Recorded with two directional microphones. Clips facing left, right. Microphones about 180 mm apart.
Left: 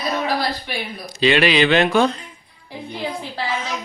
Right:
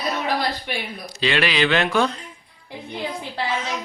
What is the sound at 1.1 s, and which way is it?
Speech, 15° left (ahead or behind).